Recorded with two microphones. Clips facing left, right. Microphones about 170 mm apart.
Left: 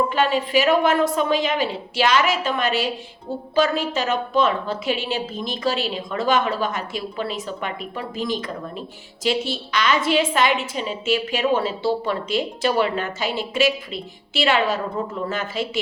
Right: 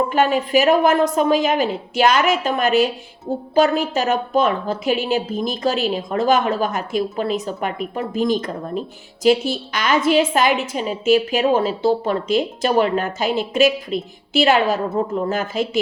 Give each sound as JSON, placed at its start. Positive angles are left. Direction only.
{"t": 0.1, "sound": "a woman's voice", "side_deg": -45}